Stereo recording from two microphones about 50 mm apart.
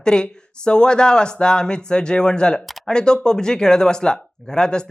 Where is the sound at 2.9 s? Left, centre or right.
Centre.